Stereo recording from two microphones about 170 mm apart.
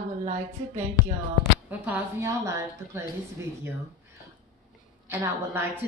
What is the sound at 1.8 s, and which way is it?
Speech, 10° right (ahead or behind).